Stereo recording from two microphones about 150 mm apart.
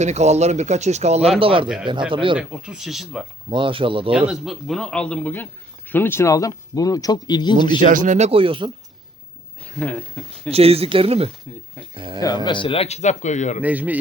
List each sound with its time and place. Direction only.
0.0 s speech: 50° right (ahead or behind)
1.6 s a man's voice: 5° right (ahead or behind)
1.9 s speech: 35° right (ahead or behind)
2.4 s a man's voice: 5° right (ahead or behind)
3.5 s speech: 35° right (ahead or behind)
4.1 s a man's voice: 5° right (ahead or behind); by 7.5 s 30° left (ahead or behind)
7.8 s speech: 60° right (ahead or behind)
8.3 s speech: 35° right (ahead or behind)
9.7 s speech: 5° left (ahead or behind)
10.5 s speech: 40° right (ahead or behind)
12.5 s speech: 35° left (ahead or behind); by 13.6 s 50° left (ahead or behind)
13.6 s a man's voice: 10° right (ahead or behind)